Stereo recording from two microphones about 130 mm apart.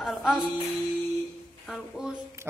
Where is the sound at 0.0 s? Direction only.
Centre (ahead or behind).